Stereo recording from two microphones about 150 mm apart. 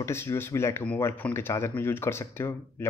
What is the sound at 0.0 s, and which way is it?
Speech, 20° left (ahead or behind).